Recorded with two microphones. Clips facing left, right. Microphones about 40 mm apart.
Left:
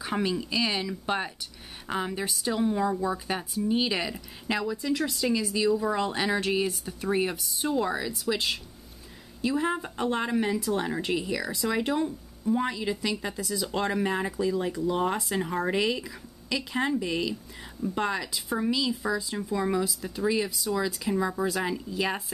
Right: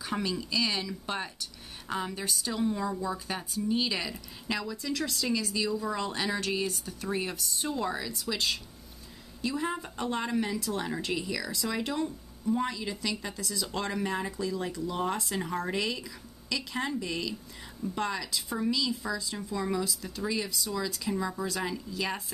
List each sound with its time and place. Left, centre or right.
0.0 s speech: centre